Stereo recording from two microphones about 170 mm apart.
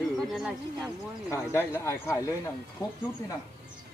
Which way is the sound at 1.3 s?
15° left (ahead or behind).